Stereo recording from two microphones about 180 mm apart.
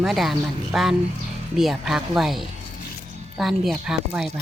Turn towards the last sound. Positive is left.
turn(degrees=-5)  # may be behind; listen again after turning